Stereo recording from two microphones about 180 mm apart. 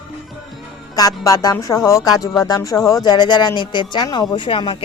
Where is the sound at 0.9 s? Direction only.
20° left (ahead or behind).